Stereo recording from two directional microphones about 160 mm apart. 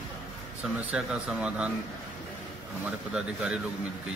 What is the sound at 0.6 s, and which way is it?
Speech, 5° right (ahead or behind).